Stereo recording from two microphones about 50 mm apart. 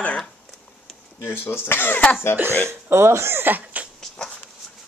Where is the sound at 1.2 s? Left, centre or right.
Left.